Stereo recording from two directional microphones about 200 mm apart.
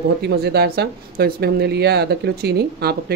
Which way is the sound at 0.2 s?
55° right (ahead or behind).